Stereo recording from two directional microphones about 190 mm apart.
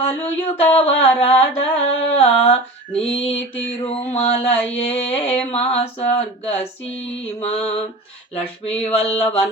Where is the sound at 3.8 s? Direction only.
30° left (ahead or behind).